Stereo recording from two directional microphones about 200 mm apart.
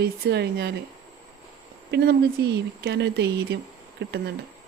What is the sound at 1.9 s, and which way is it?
Speech, 55° right (ahead or behind).